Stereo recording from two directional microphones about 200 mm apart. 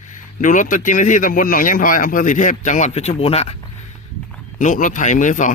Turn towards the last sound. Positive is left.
turn(degrees=40)  # may be behind; listen again after turning